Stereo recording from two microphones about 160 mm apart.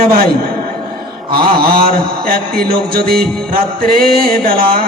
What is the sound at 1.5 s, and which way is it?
Music, 65° right (ahead or behind).